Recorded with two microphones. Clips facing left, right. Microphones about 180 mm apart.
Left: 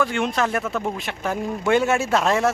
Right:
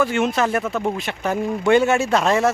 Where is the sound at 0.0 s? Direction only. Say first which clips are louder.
Right 3 dB; 5° right (ahead or behind).